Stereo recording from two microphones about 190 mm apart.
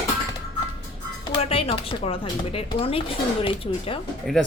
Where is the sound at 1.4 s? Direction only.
30° left (ahead or behind).